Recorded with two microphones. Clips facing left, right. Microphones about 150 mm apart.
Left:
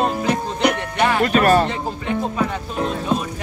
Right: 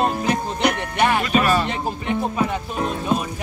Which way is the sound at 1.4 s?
55° left (ahead or behind).